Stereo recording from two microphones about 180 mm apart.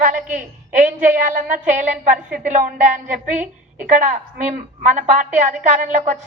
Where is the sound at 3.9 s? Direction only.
45° right (ahead or behind).